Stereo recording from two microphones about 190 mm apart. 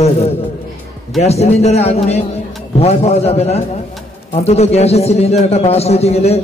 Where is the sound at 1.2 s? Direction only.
35° left (ahead or behind).